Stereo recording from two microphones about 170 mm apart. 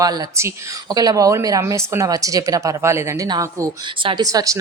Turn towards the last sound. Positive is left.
turn(degrees=-20)  # may be behind; listen again after turning